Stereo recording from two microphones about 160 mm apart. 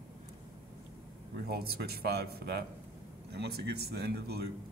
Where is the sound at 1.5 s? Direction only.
80° right.